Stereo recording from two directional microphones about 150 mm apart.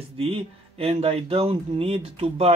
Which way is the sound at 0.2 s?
40° right (ahead or behind).